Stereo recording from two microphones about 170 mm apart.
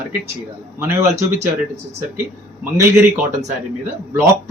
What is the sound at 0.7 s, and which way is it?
Speech, 15° right (ahead or behind).